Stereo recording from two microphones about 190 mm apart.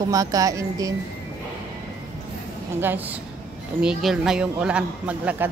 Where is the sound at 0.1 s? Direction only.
20° right (ahead or behind).